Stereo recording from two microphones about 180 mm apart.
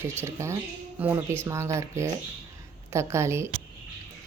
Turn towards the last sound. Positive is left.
turn(degrees=-15)  # may be behind; listen again after turning